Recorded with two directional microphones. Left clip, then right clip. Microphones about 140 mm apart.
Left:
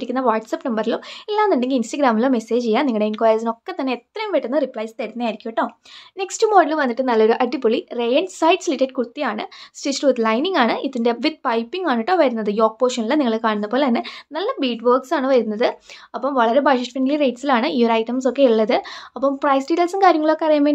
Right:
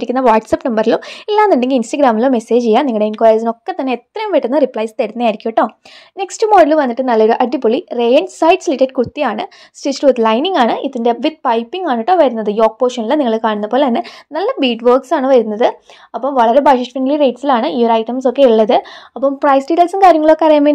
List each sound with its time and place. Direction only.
0.0 s a woman's voice: 45° right (ahead or behind)
6.1 s a woman's voice: 35° right (ahead or behind)
9.8 s speech: 25° right (ahead or behind)
14.3 s speech: 40° right (ahead or behind); by 18.8 s 25° right (ahead or behind)
18.8 s speech: 15° right (ahead or behind)
19.4 s speech: 30° right (ahead or behind)
20.3 s a woman's voice: 40° right (ahead or behind)